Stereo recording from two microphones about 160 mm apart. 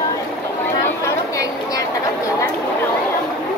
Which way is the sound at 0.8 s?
20° left (ahead or behind).